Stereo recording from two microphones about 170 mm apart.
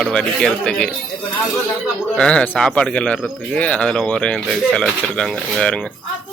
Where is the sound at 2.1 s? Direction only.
5° left (ahead or behind).